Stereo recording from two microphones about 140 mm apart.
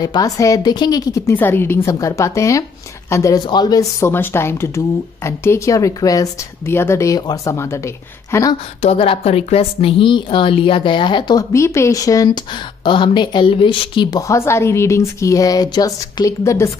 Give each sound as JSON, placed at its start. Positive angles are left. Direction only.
{"t": 0.0, "sound": "speech", "side_deg": 25}
{"t": 1.3, "sound": "speech", "side_deg": 15}
{"t": 4.1, "sound": "speech", "side_deg": 15}
{"t": 8.8, "sound": "a woman's voice", "side_deg": 40}
{"t": 11.5, "sound": "speech", "side_deg": 20}